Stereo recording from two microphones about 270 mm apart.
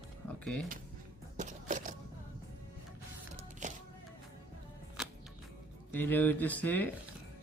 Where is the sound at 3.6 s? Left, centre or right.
Right.